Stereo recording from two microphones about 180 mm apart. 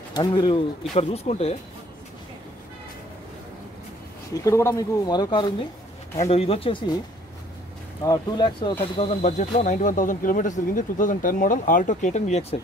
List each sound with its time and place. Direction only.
0.1 s speech: 25° left (ahead or behind)
4.5 s speech: 15° left (ahead or behind)
6.1 s speech: 35° left (ahead or behind)
8.0 s speech: 20° left (ahead or behind)
8.9 s speech: 40° left (ahead or behind)